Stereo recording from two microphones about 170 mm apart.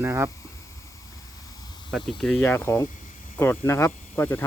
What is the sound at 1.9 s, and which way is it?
Speech, centre (ahead or behind).